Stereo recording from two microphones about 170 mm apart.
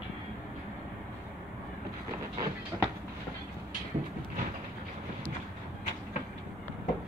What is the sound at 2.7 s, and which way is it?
Train, 20° right (ahead or behind).